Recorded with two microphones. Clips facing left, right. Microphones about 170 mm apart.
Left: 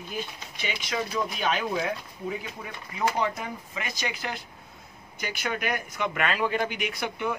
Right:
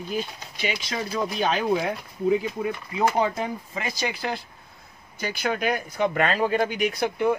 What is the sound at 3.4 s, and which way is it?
Speech, 30° right (ahead or behind).